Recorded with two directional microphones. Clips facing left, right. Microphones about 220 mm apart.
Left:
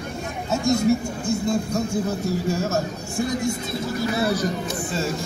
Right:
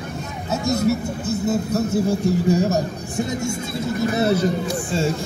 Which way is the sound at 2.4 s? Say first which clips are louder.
Right 5 dB; 15° right (ahead or behind).